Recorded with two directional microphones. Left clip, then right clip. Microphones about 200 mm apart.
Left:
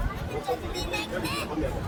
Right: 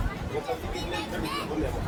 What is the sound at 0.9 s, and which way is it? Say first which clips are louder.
Speech: left 2 dB; 60° left (ahead or behind).